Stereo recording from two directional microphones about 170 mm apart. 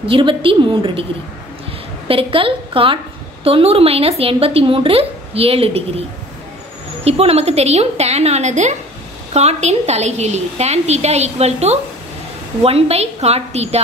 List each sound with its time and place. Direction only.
0.0 s speech: 30° right (ahead or behind)
2.0 s speech: 30° right (ahead or behind)
7.1 s speech: 35° right (ahead or behind)